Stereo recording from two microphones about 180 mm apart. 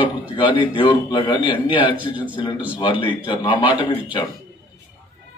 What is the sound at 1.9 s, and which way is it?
Speech, 10° right (ahead or behind).